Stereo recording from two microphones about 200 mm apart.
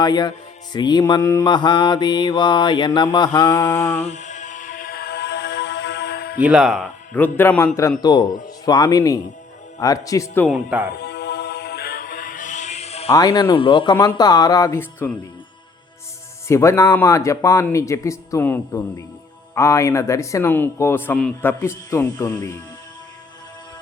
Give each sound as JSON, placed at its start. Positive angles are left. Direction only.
{"t": 0.0, "sound": "speech", "side_deg": 20}
{"t": 4.0, "sound": "music", "side_deg": 35}
{"t": 6.4, "sound": "speech", "side_deg": -5}
{"t": 10.5, "sound": "speech", "side_deg": -5}
{"t": 10.9, "sound": "music", "side_deg": 55}
{"t": 13.1, "sound": "speech", "side_deg": 20}
{"t": 16.5, "sound": "speech", "side_deg": 15}